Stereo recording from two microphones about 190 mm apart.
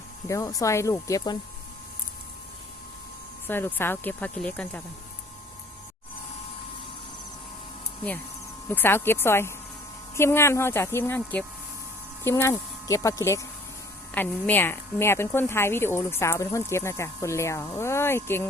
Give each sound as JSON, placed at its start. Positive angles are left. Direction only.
{"t": 0.3, "sound": "a woman's voice", "side_deg": 15}
{"t": 3.4, "sound": "a woman's voice", "side_deg": 10}
{"t": 8.7, "sound": "a woman's voice", "side_deg": 10}